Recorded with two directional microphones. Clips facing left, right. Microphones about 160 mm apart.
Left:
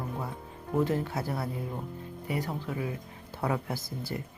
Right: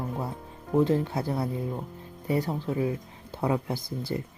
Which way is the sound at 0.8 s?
20° right (ahead or behind).